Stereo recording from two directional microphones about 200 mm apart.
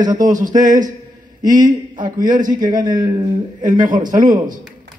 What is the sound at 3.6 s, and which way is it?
Speech, 40° right (ahead or behind).